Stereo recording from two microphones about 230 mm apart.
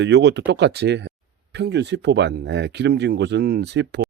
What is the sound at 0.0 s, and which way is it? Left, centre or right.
Speech, right.